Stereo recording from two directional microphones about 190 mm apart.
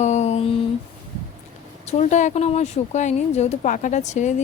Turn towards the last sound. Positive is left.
turn(degrees=40)  # may be behind; listen again after turning